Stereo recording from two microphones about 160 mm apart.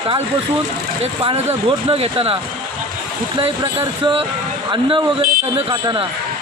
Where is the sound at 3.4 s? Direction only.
35° right (ahead or behind).